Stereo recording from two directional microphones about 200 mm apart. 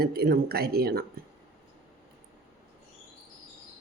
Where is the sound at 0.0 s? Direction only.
50° right (ahead or behind).